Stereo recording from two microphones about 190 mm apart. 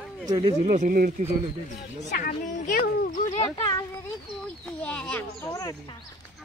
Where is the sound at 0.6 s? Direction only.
40° right (ahead or behind).